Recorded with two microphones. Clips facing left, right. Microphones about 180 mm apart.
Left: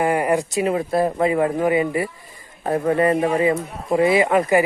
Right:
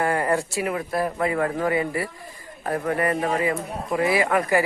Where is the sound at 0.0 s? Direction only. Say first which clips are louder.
Left 4 dB; 15° left (ahead or behind).